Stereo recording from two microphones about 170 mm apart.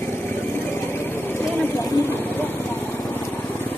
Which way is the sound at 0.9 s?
10° left (ahead or behind).